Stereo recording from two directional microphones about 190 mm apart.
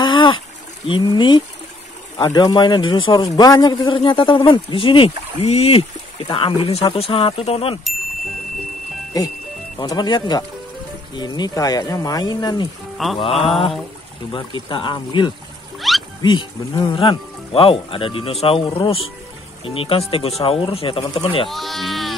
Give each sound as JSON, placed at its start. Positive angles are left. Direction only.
{"t": 0.0, "sound": "a sound", "side_deg": 25}
{"t": 0.8, "sound": "a man's voice", "side_deg": 25}
{"t": 9.1, "sound": "a man's voice", "side_deg": 20}
{"t": 12.9, "sound": "music", "side_deg": 0}
{"t": 13.2, "sound": "a man's voice", "side_deg": 30}
{"t": 15.8, "sound": "a sound", "side_deg": 0}
{"t": 16.2, "sound": "a man's voice", "side_deg": 20}
{"t": 21.5, "sound": "speech", "side_deg": 0}